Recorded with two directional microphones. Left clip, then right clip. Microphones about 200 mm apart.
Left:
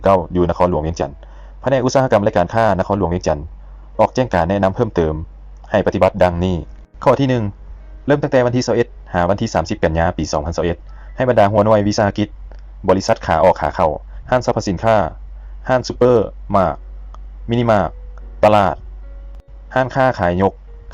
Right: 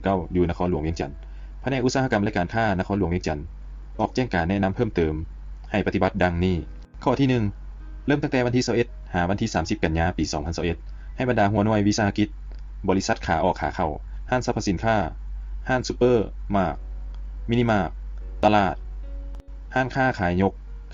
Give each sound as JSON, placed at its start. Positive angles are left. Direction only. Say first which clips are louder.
{"t": 0.0, "sound": "speech", "louder": "left 10 dB", "side_deg": 10}
{"t": 16.5, "sound": "a sound", "louder": "left 9 dB", "side_deg": 10}
{"t": 18.4, "sound": "speech", "louder": "left 8 dB", "side_deg": 10}